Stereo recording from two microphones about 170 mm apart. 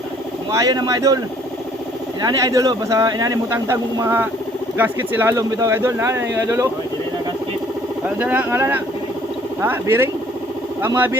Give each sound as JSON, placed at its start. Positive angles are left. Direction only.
{"t": 0.5, "sound": "speech", "side_deg": -20}
{"t": 2.2, "sound": "speech", "side_deg": -20}
{"t": 8.2, "sound": "speech", "side_deg": -10}